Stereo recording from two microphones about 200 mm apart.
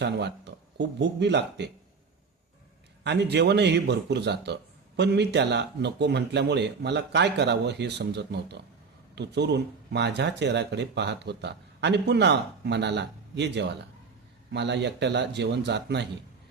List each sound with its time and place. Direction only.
0.0 s a man's voice: 60° right (ahead or behind)
3.0 s a man's voice: 55° right (ahead or behind)